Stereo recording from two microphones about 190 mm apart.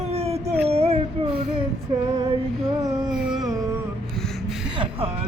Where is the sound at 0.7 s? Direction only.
35° right (ahead or behind).